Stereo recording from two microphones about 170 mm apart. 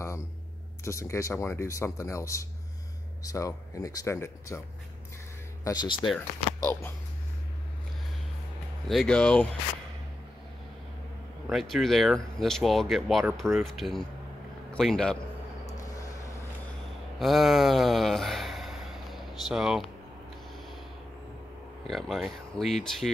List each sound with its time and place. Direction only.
0.8 s speech: 15° left (ahead or behind)
6.1 s speech: 15° left (ahead or behind)
8.8 s speech: 5° left (ahead or behind)
11.4 s speech: centre (ahead or behind)
15.6 s vehicle: 20° left (ahead or behind)
17.2 s a sound: centre (ahead or behind)
21.8 s speech: centre (ahead or behind)